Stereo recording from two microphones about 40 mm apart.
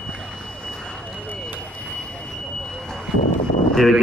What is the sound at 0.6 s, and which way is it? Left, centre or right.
Vehicle, centre.